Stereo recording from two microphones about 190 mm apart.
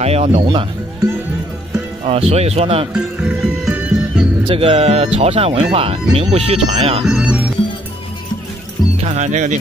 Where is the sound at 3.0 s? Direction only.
5° right (ahead or behind).